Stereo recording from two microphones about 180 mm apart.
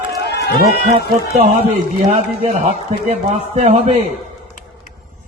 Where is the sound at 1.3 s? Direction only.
40° right (ahead or behind).